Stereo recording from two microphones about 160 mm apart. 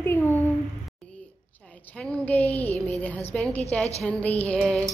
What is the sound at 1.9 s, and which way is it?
A woman's voice, 5° left (ahead or behind).